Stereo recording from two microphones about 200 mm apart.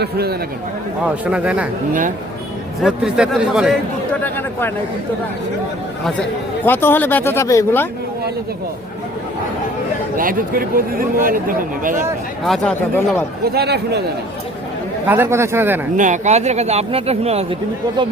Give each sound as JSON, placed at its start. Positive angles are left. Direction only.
{"t": 0.0, "sound": "speech", "side_deg": -55}
{"t": 1.0, "sound": "speech", "side_deg": -5}
{"t": 1.9, "sound": "speech", "side_deg": -40}
{"t": 2.8, "sound": "speech", "side_deg": 0}
{"t": 6.7, "sound": "speech", "side_deg": 10}
{"t": 10.2, "sound": "speech", "side_deg": -45}
{"t": 12.5, "sound": "speech", "side_deg": 5}
{"t": 13.4, "sound": "speech", "side_deg": -55}
{"t": 15.0, "sound": "speech", "side_deg": -10}
{"t": 16.0, "sound": "speech", "side_deg": -40}